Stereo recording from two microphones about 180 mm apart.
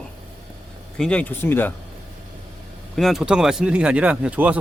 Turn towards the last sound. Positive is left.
turn(degrees=-5)  # may be behind; listen again after turning